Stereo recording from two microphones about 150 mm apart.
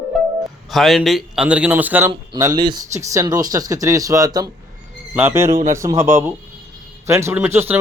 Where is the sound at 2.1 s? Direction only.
30° right (ahead or behind).